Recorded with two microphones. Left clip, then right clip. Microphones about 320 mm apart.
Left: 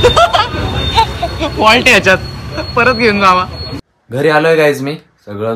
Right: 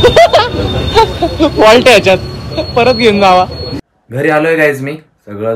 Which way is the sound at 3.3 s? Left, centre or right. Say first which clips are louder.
Right 2 dB; centre.